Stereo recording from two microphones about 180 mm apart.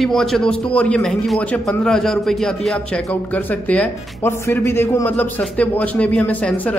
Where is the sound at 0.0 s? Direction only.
Centre (ahead or behind).